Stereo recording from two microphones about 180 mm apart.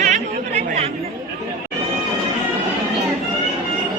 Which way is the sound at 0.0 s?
40° right (ahead or behind).